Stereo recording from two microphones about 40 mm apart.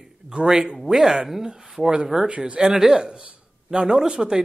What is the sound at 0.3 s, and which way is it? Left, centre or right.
A man's voice, centre.